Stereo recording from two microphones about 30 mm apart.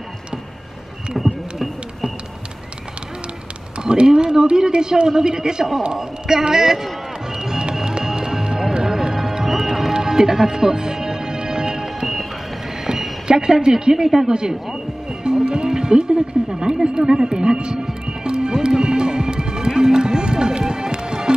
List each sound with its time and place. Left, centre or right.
1.1 s a sound: centre
3.8 s a man's voice: right
7.3 s music: right
12.8 s a sound: centre
14.2 s speech: right
18.2 s music: right